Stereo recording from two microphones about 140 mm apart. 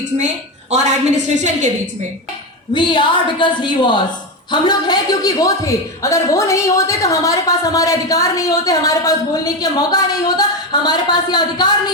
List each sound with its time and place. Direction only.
0.7 s a woman's voice: 55° right (ahead or behind)
2.7 s a woman's voice: 35° left (ahead or behind)